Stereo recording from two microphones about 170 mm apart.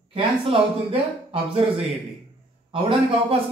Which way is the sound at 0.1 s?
30° right (ahead or behind).